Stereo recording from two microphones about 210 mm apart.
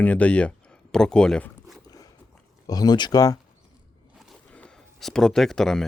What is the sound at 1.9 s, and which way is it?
Walk, 20° left (ahead or behind).